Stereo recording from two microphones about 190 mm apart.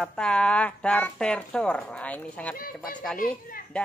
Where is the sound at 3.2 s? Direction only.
50° left (ahead or behind).